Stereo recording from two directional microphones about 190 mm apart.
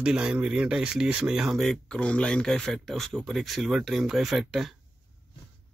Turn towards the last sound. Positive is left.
turn(degrees=0)  # may be behind; listen again after turning